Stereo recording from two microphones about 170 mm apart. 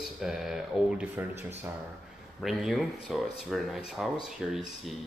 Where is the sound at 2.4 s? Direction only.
Centre (ahead or behind).